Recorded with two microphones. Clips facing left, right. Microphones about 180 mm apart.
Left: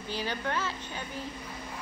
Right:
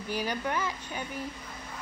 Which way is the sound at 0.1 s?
10° right (ahead or behind).